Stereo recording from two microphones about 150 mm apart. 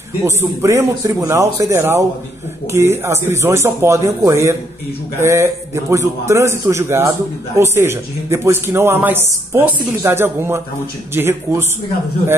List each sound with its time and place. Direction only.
0.2 s a man's voice: 20° right (ahead or behind)